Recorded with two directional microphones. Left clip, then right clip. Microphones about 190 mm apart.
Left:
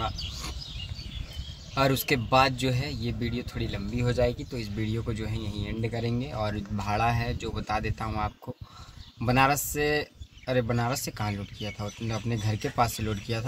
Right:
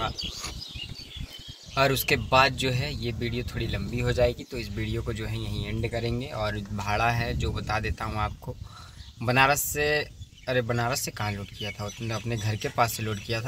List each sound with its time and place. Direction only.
1.8 s speech: centre (ahead or behind)